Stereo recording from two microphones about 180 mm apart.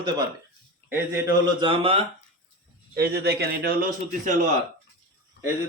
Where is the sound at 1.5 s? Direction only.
30° right (ahead or behind).